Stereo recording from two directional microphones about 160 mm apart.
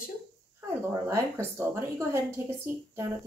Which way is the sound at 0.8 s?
15° right (ahead or behind).